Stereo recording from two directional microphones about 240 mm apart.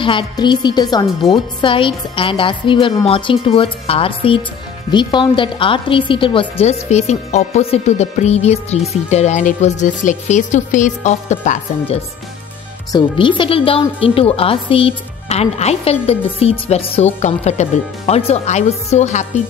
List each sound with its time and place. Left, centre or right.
0.0 s speech: left